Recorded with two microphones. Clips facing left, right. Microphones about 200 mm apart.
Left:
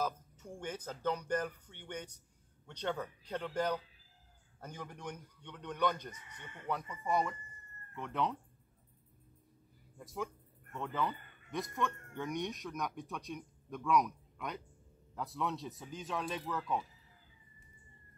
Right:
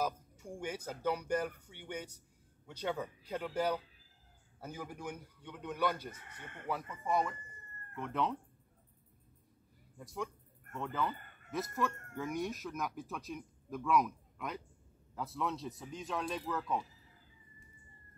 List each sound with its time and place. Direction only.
0.0 s a sound: 10° right (ahead or behind)
1.0 s a man's voice: 10° right (ahead or behind)
6.1 s speech: 55° right (ahead or behind)
6.9 s speech: centre (ahead or behind)
9.9 s speech: centre (ahead or behind)
11.1 s music: 50° right (ahead or behind)
11.5 s speech: 5° right (ahead or behind)